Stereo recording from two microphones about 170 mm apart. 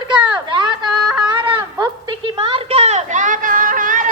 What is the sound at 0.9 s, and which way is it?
Yodeling, centre (ahead or behind).